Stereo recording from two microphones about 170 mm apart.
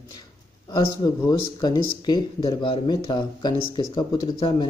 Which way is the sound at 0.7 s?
20° left (ahead or behind).